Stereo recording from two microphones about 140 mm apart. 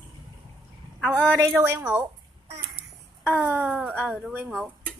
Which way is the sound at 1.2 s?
15° right (ahead or behind).